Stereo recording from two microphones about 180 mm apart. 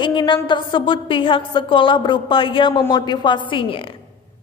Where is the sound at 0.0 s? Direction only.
25° left (ahead or behind).